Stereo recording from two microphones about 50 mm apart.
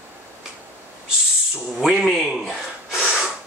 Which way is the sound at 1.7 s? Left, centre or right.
Centre.